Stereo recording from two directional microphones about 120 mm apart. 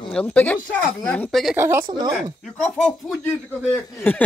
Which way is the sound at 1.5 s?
20° right (ahead or behind).